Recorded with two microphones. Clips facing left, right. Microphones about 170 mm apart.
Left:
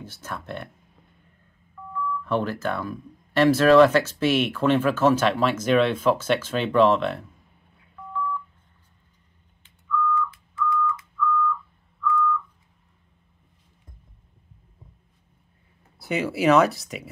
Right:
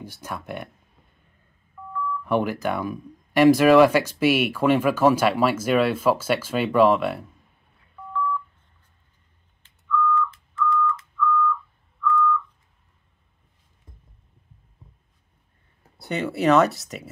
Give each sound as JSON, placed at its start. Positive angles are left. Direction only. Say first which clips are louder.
{"t": 0.0, "sound": "speech", "louder": "right 1 dB", "side_deg": -15}
{"t": 1.8, "sound": "telephone dialing", "louder": "right 1 dB", "side_deg": -10}
{"t": 2.2, "sound": "speech", "louder": "right 3 dB", "side_deg": -15}
{"t": 9.8, "sound": "a sound", "louder": "right 2 dB", "side_deg": 10}
{"t": 16.0, "sound": "speech", "louder": "even", "side_deg": 0}